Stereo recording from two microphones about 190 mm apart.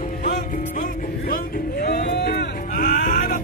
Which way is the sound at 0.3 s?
50° left (ahead or behind).